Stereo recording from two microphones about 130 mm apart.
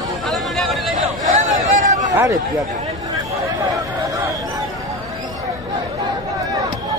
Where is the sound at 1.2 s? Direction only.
70° right (ahead or behind).